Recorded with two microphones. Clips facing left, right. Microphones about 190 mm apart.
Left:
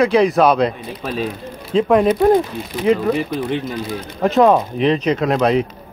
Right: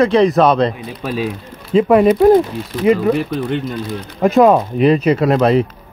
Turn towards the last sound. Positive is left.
turn(degrees=0)  # may be behind; listen again after turning